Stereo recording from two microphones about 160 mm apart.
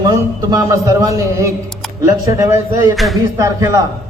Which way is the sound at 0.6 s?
20° right (ahead or behind).